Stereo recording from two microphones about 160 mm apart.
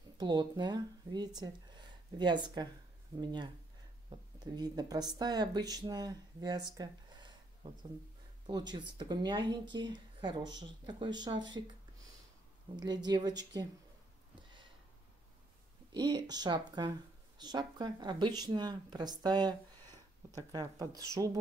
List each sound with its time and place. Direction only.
0.2 s speech: 25° right (ahead or behind)
6.8 s a sound: 30° right (ahead or behind)
8.5 s speech: 25° right (ahead or behind)
12.7 s speech: 25° right (ahead or behind)
13.3 s speech: 90° right
15.9 s speech: 25° right (ahead or behind)